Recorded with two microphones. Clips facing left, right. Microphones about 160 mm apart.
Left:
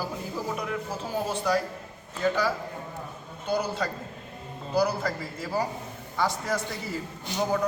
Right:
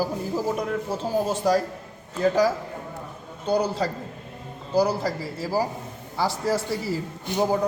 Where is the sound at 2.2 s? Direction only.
40° right (ahead or behind).